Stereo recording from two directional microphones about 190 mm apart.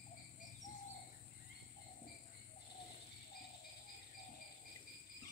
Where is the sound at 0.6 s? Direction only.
40° left (ahead or behind).